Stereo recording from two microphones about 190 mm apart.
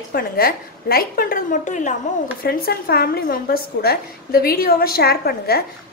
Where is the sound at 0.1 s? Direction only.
50° left (ahead or behind).